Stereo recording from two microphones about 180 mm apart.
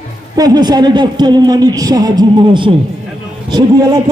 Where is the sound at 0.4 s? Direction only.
20° right (ahead or behind).